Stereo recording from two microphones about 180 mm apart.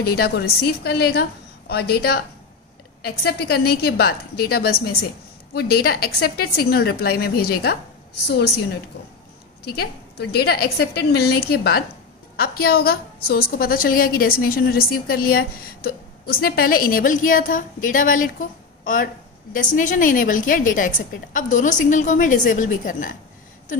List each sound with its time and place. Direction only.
0.0 s a woman's voice: 60° left (ahead or behind)
9.7 s a woman's voice: 60° left (ahead or behind)